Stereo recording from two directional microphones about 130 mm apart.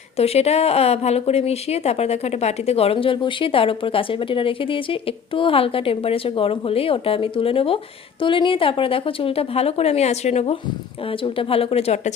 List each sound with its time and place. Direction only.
0.2 s a woman's voice: 55° left (ahead or behind)